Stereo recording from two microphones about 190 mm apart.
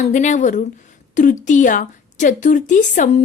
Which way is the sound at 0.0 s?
40° left (ahead or behind).